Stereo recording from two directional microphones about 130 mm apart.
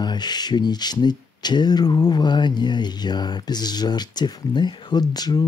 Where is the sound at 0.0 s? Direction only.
35° left (ahead or behind).